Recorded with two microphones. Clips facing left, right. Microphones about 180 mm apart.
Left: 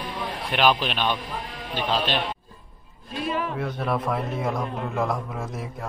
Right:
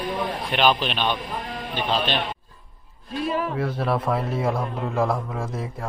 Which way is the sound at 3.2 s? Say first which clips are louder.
Right 2 dB; 35° right (ahead or behind).